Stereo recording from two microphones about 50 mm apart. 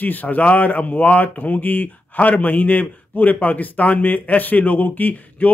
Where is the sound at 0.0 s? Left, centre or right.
Left.